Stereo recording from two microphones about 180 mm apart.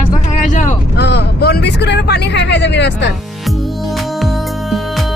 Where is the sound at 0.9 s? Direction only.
70° left (ahead or behind).